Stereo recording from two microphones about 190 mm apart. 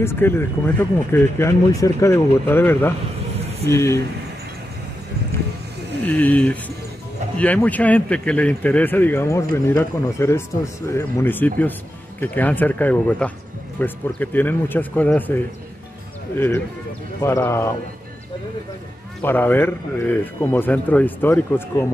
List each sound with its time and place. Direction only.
0.0 s speech: 10° left (ahead or behind)
6.0 s speech: 10° left (ahead or behind)
19.2 s speech: 10° left (ahead or behind)